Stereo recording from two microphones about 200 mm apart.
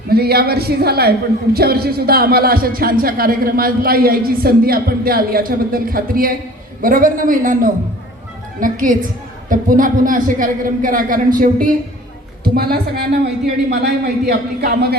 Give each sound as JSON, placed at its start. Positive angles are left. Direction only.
{"t": 0.1, "sound": "speech", "side_deg": -50}